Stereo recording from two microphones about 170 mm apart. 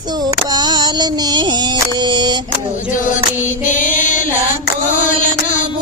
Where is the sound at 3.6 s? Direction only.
50° left (ahead or behind).